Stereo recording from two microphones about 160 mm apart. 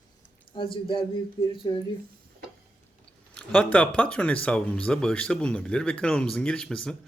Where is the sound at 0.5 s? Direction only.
30° left (ahead or behind).